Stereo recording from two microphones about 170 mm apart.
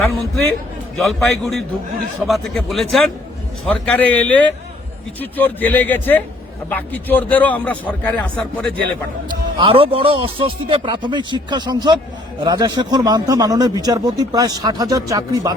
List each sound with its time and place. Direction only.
0.9 s a man's voice: centre (ahead or behind)
9.6 s speech: 30° right (ahead or behind)